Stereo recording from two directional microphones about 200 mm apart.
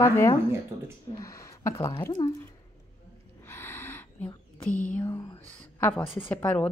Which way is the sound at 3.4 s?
10° left (ahead or behind).